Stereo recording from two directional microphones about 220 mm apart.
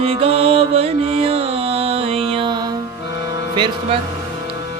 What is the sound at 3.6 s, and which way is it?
Speech, 20° right (ahead or behind).